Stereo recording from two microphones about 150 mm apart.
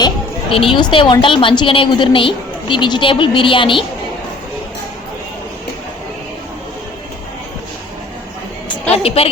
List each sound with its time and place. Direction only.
0.5 s a woman's voice: 35° left (ahead or behind)
9.0 s a woman's voice: 40° left (ahead or behind)